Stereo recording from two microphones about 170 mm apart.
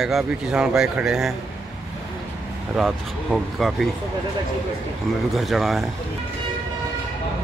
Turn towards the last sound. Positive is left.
turn(degrees=0)  # may be behind; listen again after turning